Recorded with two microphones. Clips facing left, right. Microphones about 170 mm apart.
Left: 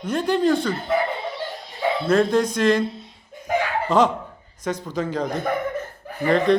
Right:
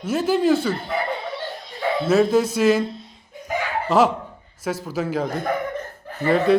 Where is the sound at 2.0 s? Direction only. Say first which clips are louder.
Right 2 dB; 5° right (ahead or behind).